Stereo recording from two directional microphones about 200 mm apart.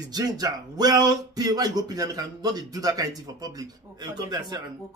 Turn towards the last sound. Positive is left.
turn(degrees=-20)  # may be behind; listen again after turning